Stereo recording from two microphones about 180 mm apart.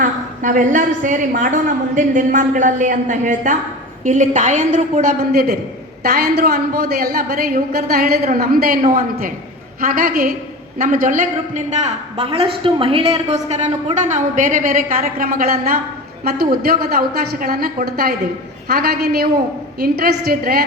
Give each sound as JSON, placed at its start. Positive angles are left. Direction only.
{"t": 0.0, "sound": "a woman's voice", "side_deg": -45}